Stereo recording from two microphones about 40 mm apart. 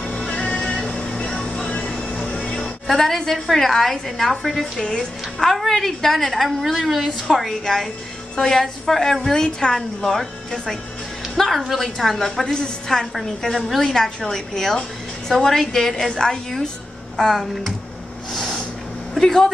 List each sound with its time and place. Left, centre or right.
0.3 s music: centre
2.0 s vehicle: centre
2.9 s a woman's voice: centre
9.8 s a woman's voice: centre
18.3 s snort: centre
19.1 s speech: centre